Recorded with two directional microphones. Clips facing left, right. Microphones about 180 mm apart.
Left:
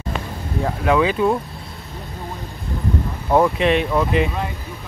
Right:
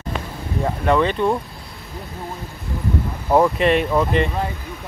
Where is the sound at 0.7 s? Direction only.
Centre (ahead or behind).